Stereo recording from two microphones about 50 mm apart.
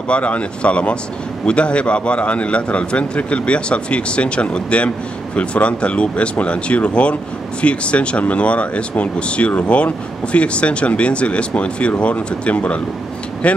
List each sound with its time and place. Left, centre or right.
0.1 s a man's voice: left